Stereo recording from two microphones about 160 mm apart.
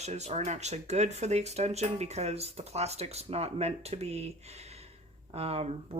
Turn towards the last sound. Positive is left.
turn(degrees=-40)  # may be behind; listen again after turning